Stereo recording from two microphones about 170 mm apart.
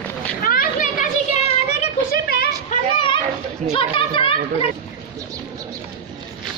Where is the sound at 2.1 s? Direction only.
65° left (ahead or behind).